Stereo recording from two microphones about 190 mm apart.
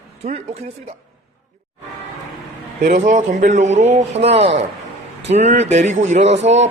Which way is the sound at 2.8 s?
40° right (ahead or behind).